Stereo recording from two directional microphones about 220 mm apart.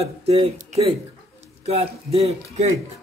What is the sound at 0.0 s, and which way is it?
Speech, 30° right (ahead or behind).